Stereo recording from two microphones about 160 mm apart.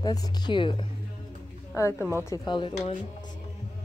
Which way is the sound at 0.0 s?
25° left (ahead or behind).